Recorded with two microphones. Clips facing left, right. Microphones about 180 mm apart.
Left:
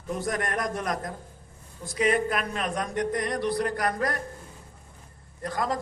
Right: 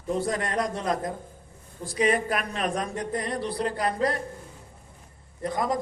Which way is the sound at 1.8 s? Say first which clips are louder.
Even; 35° right (ahead or behind).